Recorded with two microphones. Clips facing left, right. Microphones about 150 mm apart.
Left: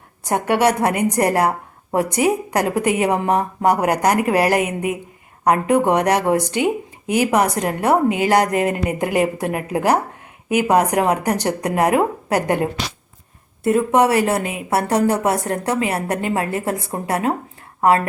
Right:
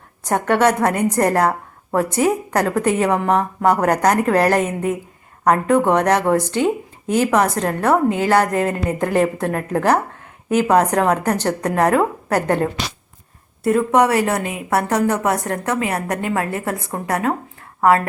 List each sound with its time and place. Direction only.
0.3 s a woman's voice: 10° left (ahead or behind)
13.7 s a woman's voice: 25° left (ahead or behind)